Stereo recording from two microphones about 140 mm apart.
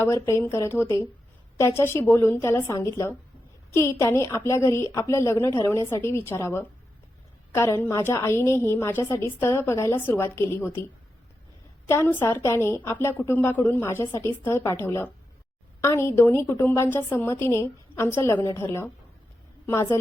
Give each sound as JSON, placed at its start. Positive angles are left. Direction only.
{"t": 0.0, "sound": "a woman's voice", "side_deg": 20}
{"t": 11.9, "sound": "a woman's voice", "side_deg": 15}